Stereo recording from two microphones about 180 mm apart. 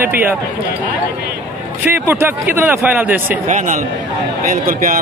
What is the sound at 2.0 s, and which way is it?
Speech, 15° right (ahead or behind).